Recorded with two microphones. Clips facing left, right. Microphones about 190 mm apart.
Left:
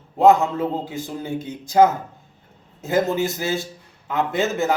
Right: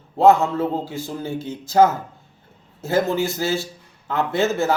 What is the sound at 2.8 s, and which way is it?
Speech, 20° left (ahead or behind).